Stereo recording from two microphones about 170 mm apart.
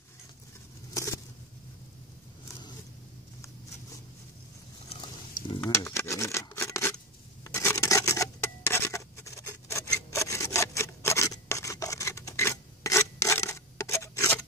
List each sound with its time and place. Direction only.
0.9 s patter: 20° left (ahead or behind)
4.8 s pig: 30° left (ahead or behind)
5.6 s a sound: 15° left (ahead or behind)